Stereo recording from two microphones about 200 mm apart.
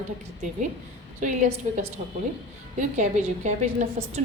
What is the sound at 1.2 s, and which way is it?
A woman's voice, 40° right (ahead or behind).